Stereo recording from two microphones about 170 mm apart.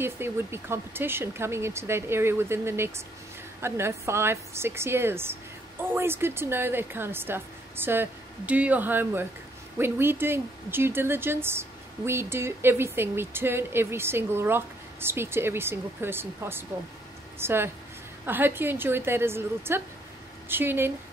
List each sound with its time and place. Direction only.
0.0 s a woman's voice: 15° right (ahead or behind)